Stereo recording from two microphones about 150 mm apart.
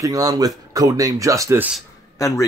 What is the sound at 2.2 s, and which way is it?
Speech, 25° left (ahead or behind).